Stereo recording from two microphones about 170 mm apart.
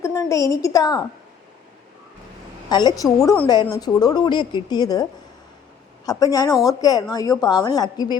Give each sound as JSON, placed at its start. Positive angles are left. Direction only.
{"t": 0.0, "sound": "a woman's voice", "side_deg": 20}
{"t": 2.6, "sound": "a woman's voice", "side_deg": 25}
{"t": 6.1, "sound": "a woman's voice", "side_deg": 20}